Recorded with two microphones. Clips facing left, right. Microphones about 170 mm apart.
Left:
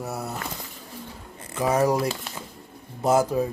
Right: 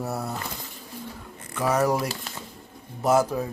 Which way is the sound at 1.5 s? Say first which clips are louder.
Left 1 dB; 15° left (ahead or behind).